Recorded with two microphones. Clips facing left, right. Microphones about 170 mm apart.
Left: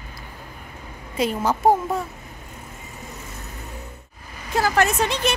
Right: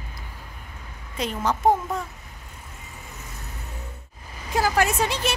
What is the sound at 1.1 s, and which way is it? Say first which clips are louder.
Speech: left 4 dB; 5° left (ahead or behind).